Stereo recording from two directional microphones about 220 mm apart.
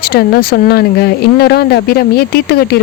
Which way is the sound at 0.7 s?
45° left (ahead or behind).